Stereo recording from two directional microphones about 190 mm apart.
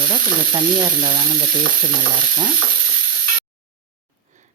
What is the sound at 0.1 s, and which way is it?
Speech, 25° right (ahead or behind).